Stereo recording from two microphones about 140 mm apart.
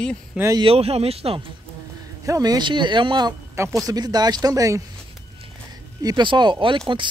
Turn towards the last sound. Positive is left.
turn(degrees=-35)  # may be behind; listen again after turning